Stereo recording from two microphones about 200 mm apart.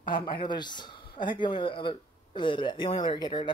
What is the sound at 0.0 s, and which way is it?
Speech, 25° left (ahead or behind).